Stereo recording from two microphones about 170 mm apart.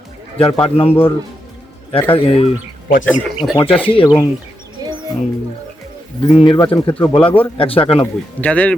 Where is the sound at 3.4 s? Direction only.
10° left (ahead or behind).